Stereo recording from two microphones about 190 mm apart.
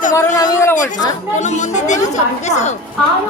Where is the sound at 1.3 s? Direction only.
40° left (ahead or behind).